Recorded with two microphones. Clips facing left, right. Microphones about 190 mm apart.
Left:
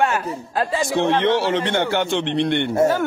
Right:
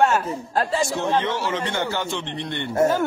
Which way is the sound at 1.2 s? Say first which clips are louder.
Left 6 dB; 65° left (ahead or behind).